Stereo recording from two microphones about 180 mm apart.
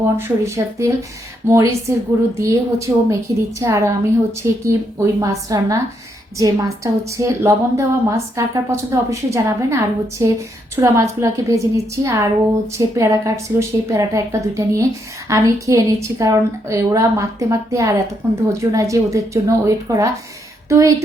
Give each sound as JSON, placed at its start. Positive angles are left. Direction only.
{"t": 0.2, "sound": "a woman's voice", "side_deg": -15}